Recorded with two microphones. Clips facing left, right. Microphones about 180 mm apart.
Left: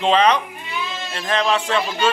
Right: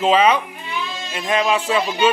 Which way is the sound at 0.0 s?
5° right (ahead or behind).